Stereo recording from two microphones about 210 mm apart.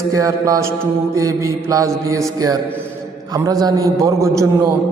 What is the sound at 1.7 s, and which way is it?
Speech, 15° right (ahead or behind).